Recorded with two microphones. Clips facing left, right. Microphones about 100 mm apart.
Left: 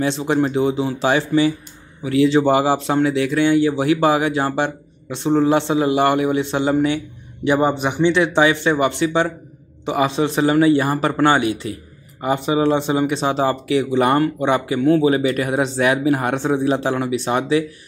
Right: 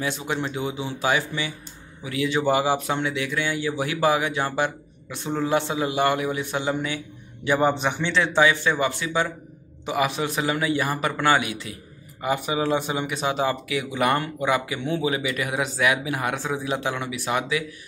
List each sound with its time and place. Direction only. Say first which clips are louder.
0.0 s speech: left 9 dB; 30° left (ahead or behind)
7.4 s a man's voice: left 4 dB; 20° left (ahead or behind)